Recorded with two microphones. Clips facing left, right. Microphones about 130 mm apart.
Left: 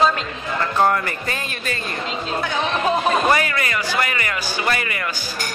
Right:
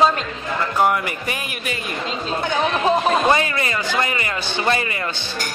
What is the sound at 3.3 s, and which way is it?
Speech, 25° right (ahead or behind).